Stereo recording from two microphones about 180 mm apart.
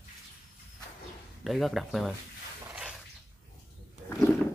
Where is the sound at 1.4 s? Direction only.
Centre (ahead or behind).